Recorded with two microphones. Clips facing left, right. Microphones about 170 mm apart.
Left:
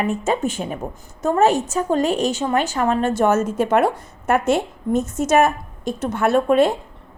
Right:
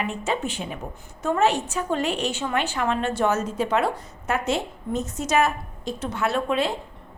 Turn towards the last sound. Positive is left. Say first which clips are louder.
# left 8 dB
turn(degrees=50)  # may be behind; listen again after turning